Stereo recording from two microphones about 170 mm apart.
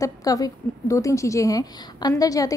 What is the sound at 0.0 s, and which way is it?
A woman's voice, 20° left (ahead or behind).